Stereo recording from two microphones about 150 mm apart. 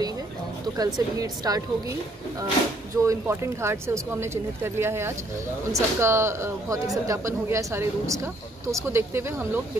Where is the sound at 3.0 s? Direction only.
20° right (ahead or behind).